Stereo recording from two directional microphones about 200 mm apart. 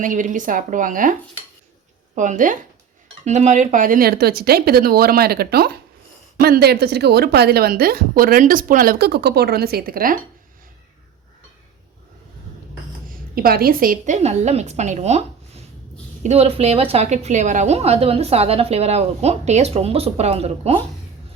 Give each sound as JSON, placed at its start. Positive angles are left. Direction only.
{"t": 0.0, "sound": "a woman's voice", "side_deg": -40}
{"t": 2.1, "sound": "a woman's voice", "side_deg": -40}
{"t": 13.1, "sound": "a woman's voice", "side_deg": -45}